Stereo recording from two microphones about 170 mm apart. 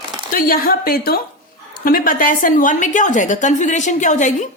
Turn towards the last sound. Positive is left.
turn(degrees=45)  # may be behind; listen again after turning